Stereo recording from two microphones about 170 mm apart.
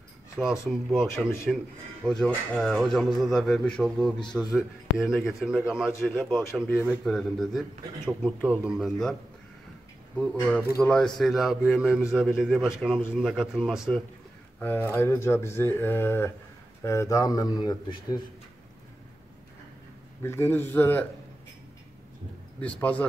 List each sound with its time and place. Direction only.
0.4 s speech: 5° right (ahead or behind)
10.1 s speech: 5° left (ahead or behind)
14.6 s speech: 10° left (ahead or behind)
20.2 s speech: 15° left (ahead or behind)
22.6 s speech: 10° left (ahead or behind)